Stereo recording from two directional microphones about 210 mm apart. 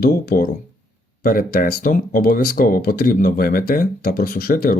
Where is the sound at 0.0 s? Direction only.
45° left (ahead or behind).